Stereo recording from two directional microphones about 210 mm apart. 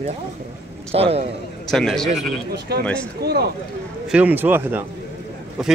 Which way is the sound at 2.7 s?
50° right (ahead or behind).